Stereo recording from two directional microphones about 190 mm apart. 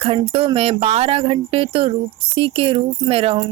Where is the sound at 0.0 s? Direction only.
30° right (ahead or behind).